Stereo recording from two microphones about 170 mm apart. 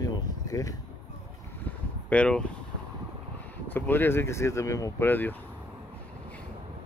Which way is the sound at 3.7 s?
10° left (ahead or behind).